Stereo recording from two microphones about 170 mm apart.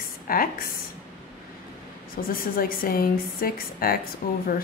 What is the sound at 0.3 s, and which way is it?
Speech, 60° left (ahead or behind).